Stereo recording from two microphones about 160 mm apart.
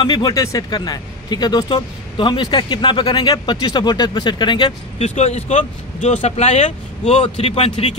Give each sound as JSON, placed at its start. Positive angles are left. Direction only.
{"t": 0.0, "sound": "speech", "side_deg": 25}
{"t": 5.0, "sound": "speech", "side_deg": 40}